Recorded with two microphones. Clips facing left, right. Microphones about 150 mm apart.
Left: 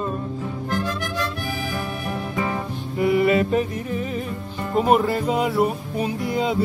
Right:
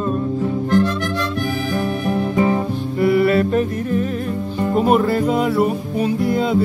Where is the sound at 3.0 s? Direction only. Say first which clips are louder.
Right 3 dB; 10° left (ahead or behind).